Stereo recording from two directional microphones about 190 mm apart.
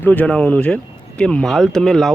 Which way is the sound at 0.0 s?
10° left (ahead or behind).